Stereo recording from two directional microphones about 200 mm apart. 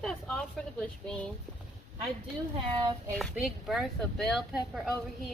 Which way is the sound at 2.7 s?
20° right (ahead or behind).